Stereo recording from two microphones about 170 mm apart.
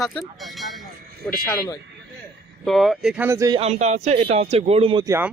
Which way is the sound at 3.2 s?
20° right (ahead or behind).